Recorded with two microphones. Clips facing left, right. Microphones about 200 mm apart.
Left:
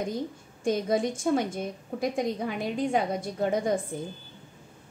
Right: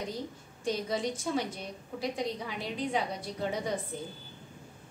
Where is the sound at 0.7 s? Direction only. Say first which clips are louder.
Left 6 dB; 50° left (ahead or behind).